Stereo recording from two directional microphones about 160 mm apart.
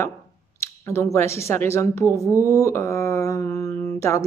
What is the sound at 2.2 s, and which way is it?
Speech, 15° right (ahead or behind).